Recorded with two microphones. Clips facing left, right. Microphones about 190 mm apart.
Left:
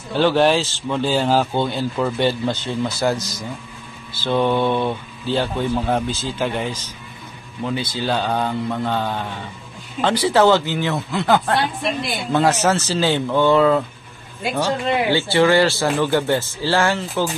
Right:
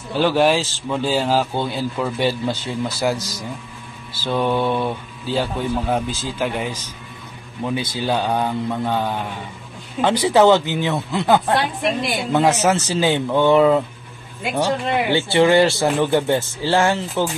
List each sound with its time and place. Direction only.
0.2 s a man's voice: 5° right (ahead or behind)
4.2 s speech: 5° right (ahead or behind)